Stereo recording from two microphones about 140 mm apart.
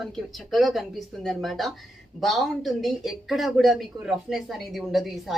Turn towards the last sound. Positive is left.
turn(degrees=0)  # may be behind; listen again after turning